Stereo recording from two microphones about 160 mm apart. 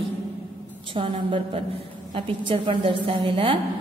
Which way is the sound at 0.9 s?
30° right (ahead or behind).